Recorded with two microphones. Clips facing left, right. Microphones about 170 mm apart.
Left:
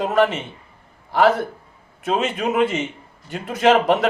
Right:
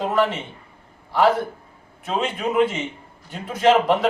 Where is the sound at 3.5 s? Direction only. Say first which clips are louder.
Left 1 dB; 75° left (ahead or behind).